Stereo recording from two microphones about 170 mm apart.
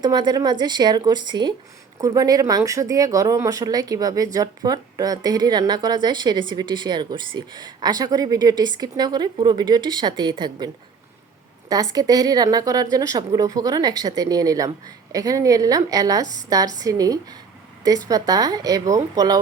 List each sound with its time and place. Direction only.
0.0 s speech: 25° right (ahead or behind)
11.7 s speech: 20° right (ahead or behind)